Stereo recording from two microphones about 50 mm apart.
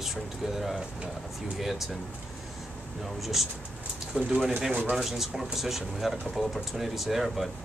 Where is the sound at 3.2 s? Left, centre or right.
Centre.